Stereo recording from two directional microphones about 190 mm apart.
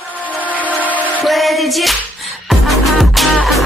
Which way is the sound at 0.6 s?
10° right (ahead or behind).